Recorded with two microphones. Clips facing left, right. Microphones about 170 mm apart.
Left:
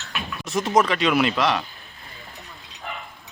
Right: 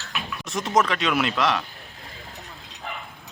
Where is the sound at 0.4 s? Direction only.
Centre (ahead or behind).